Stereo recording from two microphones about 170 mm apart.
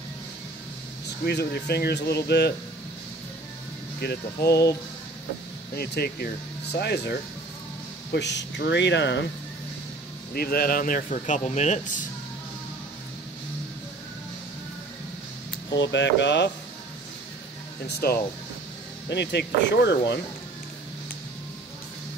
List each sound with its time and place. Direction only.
1.2 s speech: 70° left (ahead or behind)
4.0 s speech: 70° left (ahead or behind)
5.8 s speech: 70° left (ahead or behind)
8.1 s speech: 90° left
10.3 s speech: 65° left (ahead or behind); by 11.9 s 45° left (ahead or behind)
15.7 s speech: 90° left
17.8 s speech: 65° left (ahead or behind)
19.0 s speech: 85° left